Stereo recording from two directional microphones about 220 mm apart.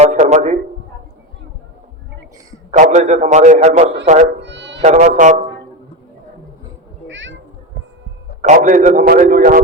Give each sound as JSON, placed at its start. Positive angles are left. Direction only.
{"t": 0.0, "sound": "a sound", "side_deg": -30}
{"t": 2.7, "sound": "a man's voice", "side_deg": -35}
{"t": 4.4, "sound": "cat", "side_deg": -55}
{"t": 4.8, "sound": "a man's voice", "side_deg": -30}
{"t": 7.1, "sound": "meow", "side_deg": -60}
{"t": 8.4, "sound": "a man's voice", "side_deg": -35}